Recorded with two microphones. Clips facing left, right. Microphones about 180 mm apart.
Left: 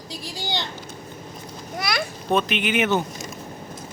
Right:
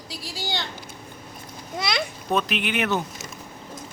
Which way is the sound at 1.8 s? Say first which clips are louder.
Even; 20° right (ahead or behind).